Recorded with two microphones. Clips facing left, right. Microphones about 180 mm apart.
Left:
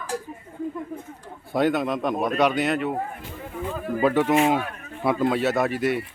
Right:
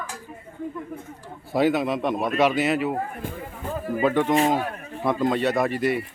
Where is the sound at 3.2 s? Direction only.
50° right (ahead or behind).